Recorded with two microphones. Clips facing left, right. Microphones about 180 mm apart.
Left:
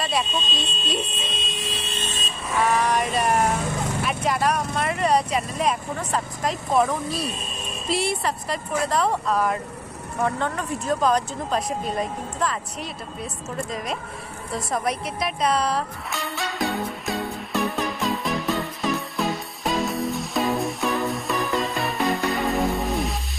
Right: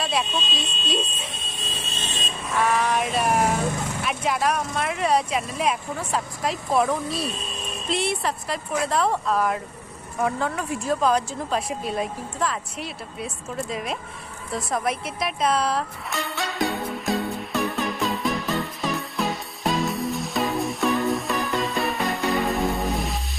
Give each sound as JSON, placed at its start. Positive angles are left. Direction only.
{"t": 0.0, "sound": "speech", "side_deg": 0}
{"t": 1.1, "sound": "a sound", "side_deg": 85}
{"t": 2.5, "sound": "speech", "side_deg": 0}
{"t": 14.5, "sound": "music", "side_deg": 0}